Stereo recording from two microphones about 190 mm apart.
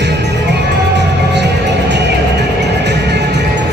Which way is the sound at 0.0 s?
65° right (ahead or behind).